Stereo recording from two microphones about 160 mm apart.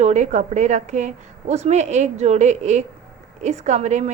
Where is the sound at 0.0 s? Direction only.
45° right (ahead or behind).